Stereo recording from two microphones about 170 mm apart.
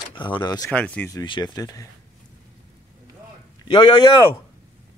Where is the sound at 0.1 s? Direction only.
30° left (ahead or behind).